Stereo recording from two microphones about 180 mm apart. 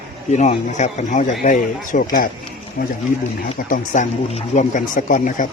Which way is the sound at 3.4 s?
45° left (ahead or behind).